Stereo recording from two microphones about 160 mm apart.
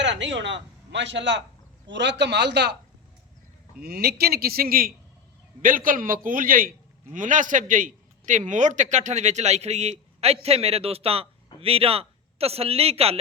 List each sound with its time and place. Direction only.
0.0 s a man's voice: 90° right
3.8 s a man's voice: 75° right (ahead or behind); by 13.1 s 40° right (ahead or behind)